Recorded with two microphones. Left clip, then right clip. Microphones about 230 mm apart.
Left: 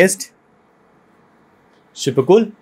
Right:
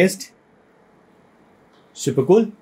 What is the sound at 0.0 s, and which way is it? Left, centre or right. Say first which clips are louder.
Speech: left 4 dB; left.